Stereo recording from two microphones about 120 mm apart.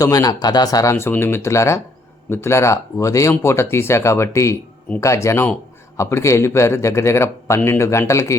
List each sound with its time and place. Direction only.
0.0 s a man's voice: 30° left (ahead or behind)